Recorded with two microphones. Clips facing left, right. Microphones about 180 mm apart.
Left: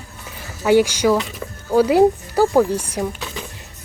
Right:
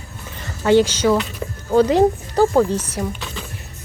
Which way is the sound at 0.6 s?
10° left (ahead or behind).